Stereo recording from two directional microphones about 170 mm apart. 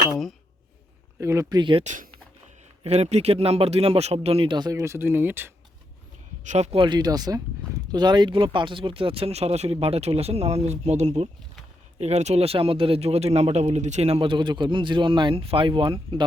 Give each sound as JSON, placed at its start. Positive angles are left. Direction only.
{"t": 1.2, "sound": "speech", "side_deg": -15}
{"t": 1.8, "sound": "speech", "side_deg": -45}
{"t": 6.4, "sound": "speech", "side_deg": -45}